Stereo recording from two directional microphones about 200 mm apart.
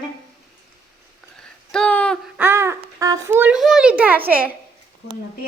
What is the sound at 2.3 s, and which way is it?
Babbling, 10° right (ahead or behind).